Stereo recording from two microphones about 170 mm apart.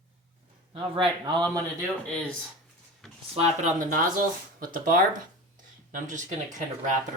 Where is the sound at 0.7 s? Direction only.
30° right (ahead or behind).